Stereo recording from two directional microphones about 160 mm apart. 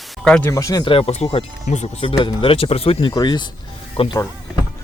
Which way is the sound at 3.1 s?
25° left (ahead or behind).